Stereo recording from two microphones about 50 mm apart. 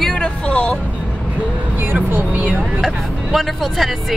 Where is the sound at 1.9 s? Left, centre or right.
Right.